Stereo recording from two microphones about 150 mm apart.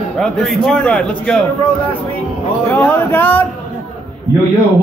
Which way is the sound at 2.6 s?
10° left (ahead or behind).